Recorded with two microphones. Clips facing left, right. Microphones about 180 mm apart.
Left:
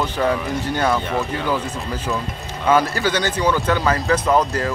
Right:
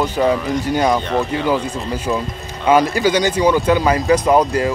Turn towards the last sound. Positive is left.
turn(degrees=-15)  # may be behind; listen again after turning